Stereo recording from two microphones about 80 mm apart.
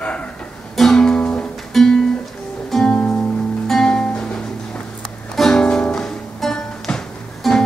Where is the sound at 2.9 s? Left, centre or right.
Centre.